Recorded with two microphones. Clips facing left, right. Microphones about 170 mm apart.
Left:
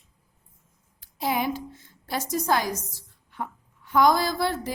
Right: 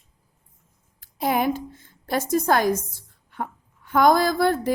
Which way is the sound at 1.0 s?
50° right (ahead or behind).